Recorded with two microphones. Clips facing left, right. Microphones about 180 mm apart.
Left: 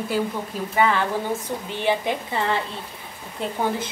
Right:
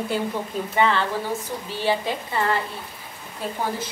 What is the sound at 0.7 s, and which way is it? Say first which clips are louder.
Speech: even; 10° left (ahead or behind).